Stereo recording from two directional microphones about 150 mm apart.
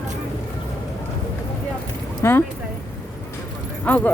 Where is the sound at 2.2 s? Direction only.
15° left (ahead or behind).